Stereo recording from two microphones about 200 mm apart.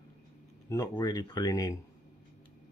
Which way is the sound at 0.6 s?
15° left (ahead or behind).